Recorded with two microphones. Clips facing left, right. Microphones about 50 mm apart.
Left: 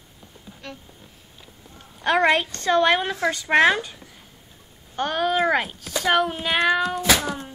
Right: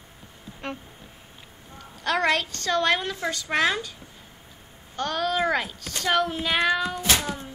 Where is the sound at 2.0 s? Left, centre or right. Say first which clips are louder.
Left 4 dB; left.